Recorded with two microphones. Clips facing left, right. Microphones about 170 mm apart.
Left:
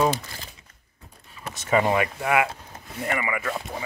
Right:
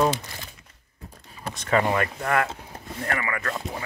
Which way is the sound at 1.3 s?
40° right (ahead or behind).